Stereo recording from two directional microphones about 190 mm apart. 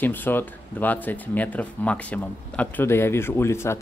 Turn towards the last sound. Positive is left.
turn(degrees=15)  # may be behind; listen again after turning